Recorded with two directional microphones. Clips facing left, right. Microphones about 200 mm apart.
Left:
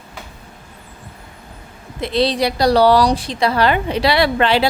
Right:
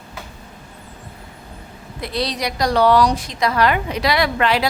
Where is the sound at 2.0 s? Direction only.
25° left (ahead or behind).